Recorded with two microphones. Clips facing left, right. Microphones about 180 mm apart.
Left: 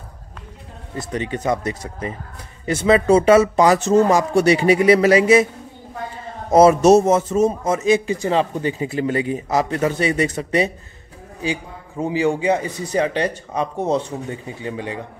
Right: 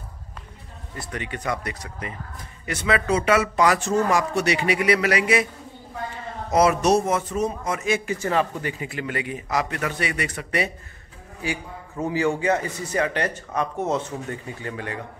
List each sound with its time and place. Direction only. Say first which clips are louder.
0.9 s a man's voice: left 7 dB; 25° left (ahead or behind)
6.5 s a man's voice: left 7 dB; 25° left (ahead or behind)